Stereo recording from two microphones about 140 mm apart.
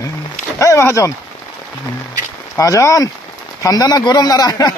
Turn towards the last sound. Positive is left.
turn(degrees=25)  # may be behind; listen again after turning